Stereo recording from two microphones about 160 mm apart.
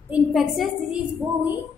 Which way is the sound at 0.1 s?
Centre (ahead or behind).